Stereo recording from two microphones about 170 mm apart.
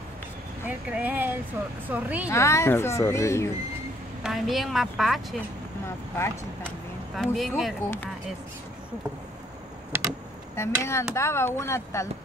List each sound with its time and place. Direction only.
0.7 s speech: 10° right (ahead or behind)
2.2 s speech: 15° left (ahead or behind)
4.2 s a woman's voice: centre (ahead or behind)
5.9 s speech: 15° left (ahead or behind)
7.3 s a woman's voice: centre (ahead or behind)
7.8 s speech: 15° left (ahead or behind)
10.5 s speech: 15° left (ahead or behind)